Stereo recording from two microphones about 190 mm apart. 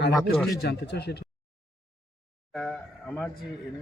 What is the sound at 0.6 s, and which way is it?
Speech, 60° left (ahead or behind).